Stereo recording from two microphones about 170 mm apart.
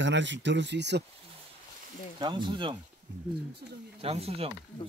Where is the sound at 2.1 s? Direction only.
25° right (ahead or behind).